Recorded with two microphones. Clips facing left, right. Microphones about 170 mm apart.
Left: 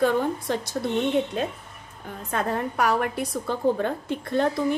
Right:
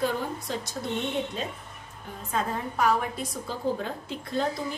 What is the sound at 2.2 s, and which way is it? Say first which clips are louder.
A woman's voice: left 3 dB; 65° left (ahead or behind).